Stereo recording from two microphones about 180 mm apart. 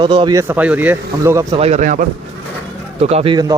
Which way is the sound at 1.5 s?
35° right (ahead or behind).